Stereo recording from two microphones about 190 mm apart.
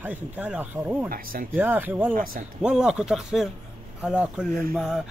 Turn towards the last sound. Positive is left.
turn(degrees=0)  # may be behind; listen again after turning